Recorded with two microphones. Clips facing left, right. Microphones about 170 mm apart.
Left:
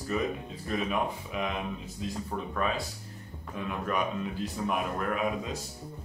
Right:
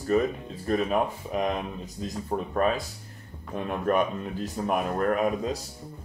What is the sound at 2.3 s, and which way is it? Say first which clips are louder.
Speech: right 8 dB; 25° right (ahead or behind).